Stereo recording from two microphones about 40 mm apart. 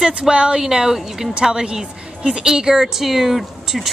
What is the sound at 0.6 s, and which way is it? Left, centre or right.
A woman's voice, centre.